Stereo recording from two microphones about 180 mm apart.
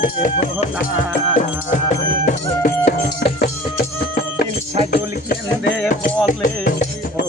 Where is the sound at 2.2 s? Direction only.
40° left (ahead or behind).